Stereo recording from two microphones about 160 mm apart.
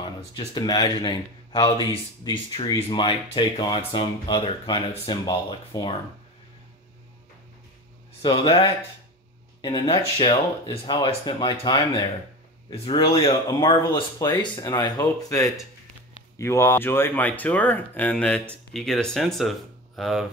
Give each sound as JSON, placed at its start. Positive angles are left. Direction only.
{"t": 0.3, "sound": "speech", "side_deg": 25}
{"t": 8.2, "sound": "speech", "side_deg": 30}